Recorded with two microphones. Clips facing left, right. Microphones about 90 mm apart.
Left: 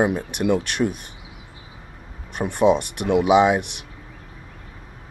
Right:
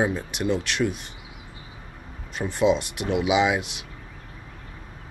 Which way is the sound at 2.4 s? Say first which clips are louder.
Left 4 dB; 55° left (ahead or behind).